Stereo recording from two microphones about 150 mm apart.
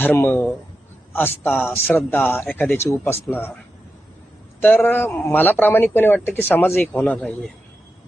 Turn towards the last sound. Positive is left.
turn(degrees=5)  # may be behind; listen again after turning